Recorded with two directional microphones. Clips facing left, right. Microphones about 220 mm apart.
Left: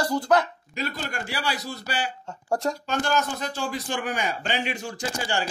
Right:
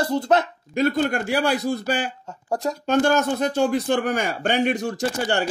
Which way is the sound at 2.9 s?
55° right (ahead or behind).